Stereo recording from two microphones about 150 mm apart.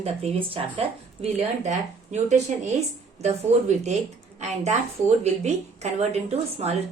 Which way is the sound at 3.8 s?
50° right (ahead or behind).